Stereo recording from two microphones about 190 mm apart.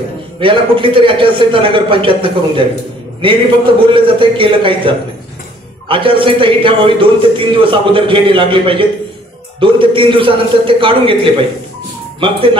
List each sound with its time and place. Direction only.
0.4 s a man's voice: 25° right (ahead or behind)